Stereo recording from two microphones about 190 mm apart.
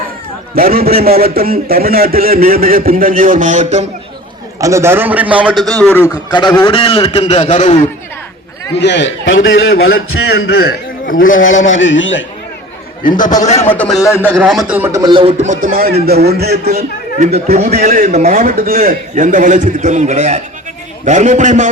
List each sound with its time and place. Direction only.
0.5 s a man's voice: 50° right (ahead or behind)
4.6 s a man's voice: 15° right (ahead or behind)
6.3 s a man's voice: 25° left (ahead or behind)
8.8 s a man's voice: 65° left (ahead or behind)
10.6 s a man's voice: 50° left (ahead or behind)
11.8 s a man's voice: 80° left
13.0 s speech: 45° left (ahead or behind)
13.6 s a man's voice: 10° left (ahead or behind)
14.3 s a man's voice: centre (ahead or behind); by 17.2 s 55° right (ahead or behind)
17.3 s a man's voice: 35° right (ahead or behind)